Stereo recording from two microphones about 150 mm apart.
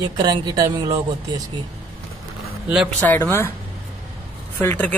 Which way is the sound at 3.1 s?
15° left (ahead or behind).